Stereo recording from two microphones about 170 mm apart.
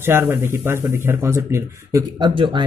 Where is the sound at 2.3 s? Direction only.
30° right (ahead or behind).